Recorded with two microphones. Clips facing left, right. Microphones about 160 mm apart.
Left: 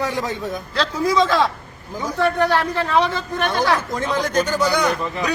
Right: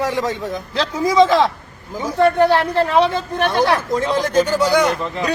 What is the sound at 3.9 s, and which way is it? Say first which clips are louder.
Speech: right 4 dB; 5° right (ahead or behind).